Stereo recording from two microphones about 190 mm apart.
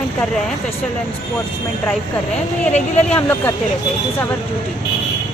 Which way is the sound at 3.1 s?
10° left (ahead or behind).